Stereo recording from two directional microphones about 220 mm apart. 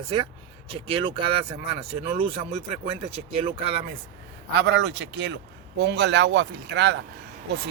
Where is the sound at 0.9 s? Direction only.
25° right (ahead or behind).